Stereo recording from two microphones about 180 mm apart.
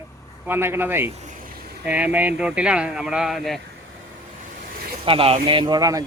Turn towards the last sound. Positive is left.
turn(degrees=-20)  # may be behind; listen again after turning